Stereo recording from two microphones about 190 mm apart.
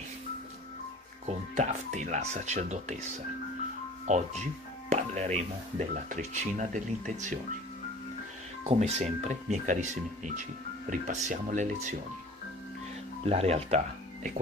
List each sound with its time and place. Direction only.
1.2 s speech: 40° right (ahead or behind)
4.1 s speech: 35° right (ahead or behind)
8.6 s speech: 35° right (ahead or behind)
13.2 s speech: 35° right (ahead or behind)